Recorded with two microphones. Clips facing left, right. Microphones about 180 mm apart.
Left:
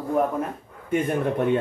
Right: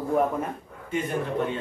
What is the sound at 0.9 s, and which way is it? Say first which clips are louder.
Speech: left 4 dB; 55° left (ahead or behind).